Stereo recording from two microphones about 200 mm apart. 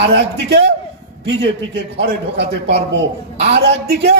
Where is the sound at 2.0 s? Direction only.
55° right (ahead or behind).